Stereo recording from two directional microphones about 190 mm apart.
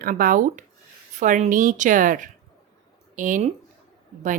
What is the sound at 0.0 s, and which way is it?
Speech, 45° right (ahead or behind).